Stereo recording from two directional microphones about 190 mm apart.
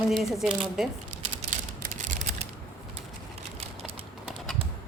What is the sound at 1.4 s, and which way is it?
Mechanisms, 40° right (ahead or behind).